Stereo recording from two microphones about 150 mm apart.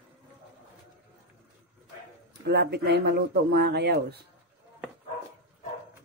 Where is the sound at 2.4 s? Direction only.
90° right.